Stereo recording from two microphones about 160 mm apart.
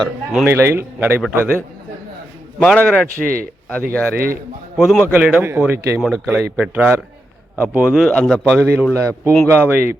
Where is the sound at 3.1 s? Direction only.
65° right (ahead or behind).